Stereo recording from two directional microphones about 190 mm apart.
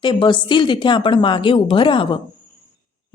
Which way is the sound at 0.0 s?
25° left (ahead or behind).